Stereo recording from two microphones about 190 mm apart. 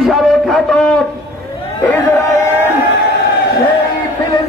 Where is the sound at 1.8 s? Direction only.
10° left (ahead or behind).